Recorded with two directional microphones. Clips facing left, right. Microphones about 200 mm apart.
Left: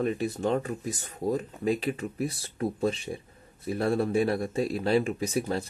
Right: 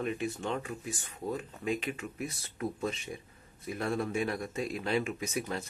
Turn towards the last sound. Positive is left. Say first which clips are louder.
# left 6 dB
turn(degrees=35)  # may be behind; listen again after turning